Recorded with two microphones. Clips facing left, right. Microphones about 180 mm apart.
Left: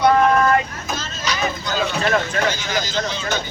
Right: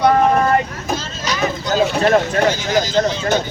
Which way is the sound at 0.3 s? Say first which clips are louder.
Right 1 dB; 35° right (ahead or behind).